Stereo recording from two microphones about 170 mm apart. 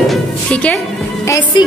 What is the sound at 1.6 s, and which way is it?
Music, 25° left (ahead or behind).